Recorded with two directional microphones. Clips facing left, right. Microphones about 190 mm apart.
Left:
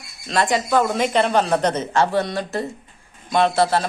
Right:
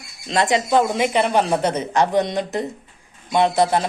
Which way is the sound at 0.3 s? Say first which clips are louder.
Right 1 dB; 20° right (ahead or behind).